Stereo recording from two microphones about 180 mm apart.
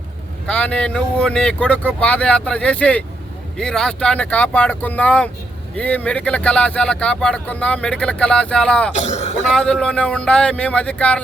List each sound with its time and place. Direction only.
0.4 s speech: 5° left (ahead or behind)
8.9 s speech: 40° left (ahead or behind)
9.4 s speech: centre (ahead or behind)